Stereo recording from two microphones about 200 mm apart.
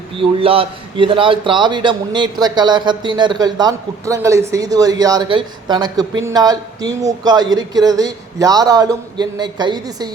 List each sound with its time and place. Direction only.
0.2 s a man's voice: 30° right (ahead or behind)